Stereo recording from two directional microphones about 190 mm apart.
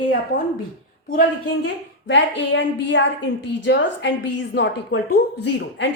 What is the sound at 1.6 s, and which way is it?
A woman's voice, 70° left (ahead or behind).